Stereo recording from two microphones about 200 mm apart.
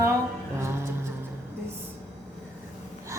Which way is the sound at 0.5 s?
15° right (ahead or behind).